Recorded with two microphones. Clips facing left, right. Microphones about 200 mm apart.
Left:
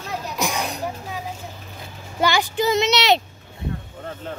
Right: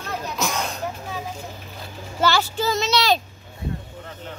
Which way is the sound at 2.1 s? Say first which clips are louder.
Left 1 dB; 15° left (ahead or behind).